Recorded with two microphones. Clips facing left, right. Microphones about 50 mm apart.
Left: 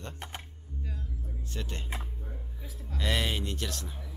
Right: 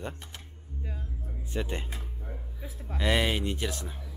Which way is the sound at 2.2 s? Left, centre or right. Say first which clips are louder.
Right 3 dB; right.